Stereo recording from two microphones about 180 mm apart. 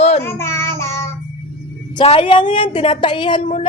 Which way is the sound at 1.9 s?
30° left (ahead or behind).